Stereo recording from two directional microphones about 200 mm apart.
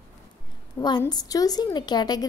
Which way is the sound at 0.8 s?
20° left (ahead or behind).